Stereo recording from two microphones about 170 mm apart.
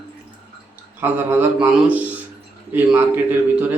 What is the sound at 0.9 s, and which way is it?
Speech, 15° right (ahead or behind).